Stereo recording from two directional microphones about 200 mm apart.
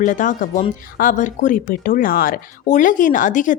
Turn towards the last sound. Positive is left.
turn(degrees=40)  # may be behind; listen again after turning